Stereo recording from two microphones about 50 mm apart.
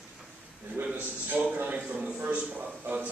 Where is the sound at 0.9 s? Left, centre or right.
Right.